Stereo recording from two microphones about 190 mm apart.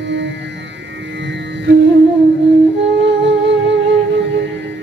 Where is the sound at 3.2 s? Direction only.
70° right (ahead or behind).